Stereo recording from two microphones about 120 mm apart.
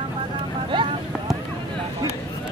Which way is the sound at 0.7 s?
45° right (ahead or behind).